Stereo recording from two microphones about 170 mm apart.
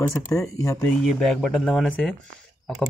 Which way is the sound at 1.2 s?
5° left (ahead or behind).